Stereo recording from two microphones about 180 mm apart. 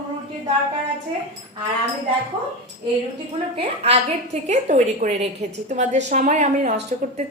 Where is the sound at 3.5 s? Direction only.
35° right (ahead or behind).